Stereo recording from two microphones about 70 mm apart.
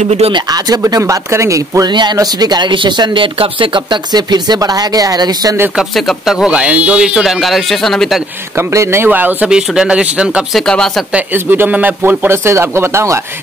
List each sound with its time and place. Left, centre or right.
0.3 s speech: right
1.9 s speech: right
2.1 s speech: right
5.9 s speech: centre
7.3 s speech: centre
8.5 s speech: right
9.5 s speech: centre
10.5 s speech: centre
11.3 s speech: right